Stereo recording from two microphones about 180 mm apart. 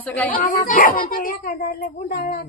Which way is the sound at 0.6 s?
50° left (ahead or behind).